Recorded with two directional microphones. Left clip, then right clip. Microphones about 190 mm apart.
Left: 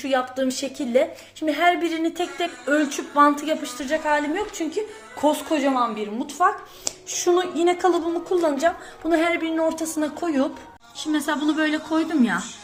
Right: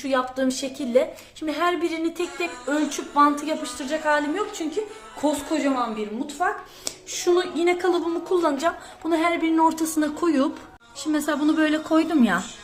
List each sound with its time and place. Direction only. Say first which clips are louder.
0.0 s a woman's voice: left 1 dB; 5° left (ahead or behind)
6.4 s a woman's voice: left 5 dB; centre (ahead or behind)
9.6 s speech: right 2 dB; 5° right (ahead or behind)
11.0 s a woman's voice: even; 15° right (ahead or behind)